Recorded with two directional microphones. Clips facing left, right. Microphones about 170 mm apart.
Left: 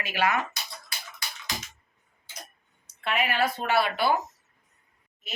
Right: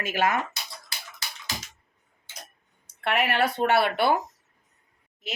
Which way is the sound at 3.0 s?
65° right (ahead or behind).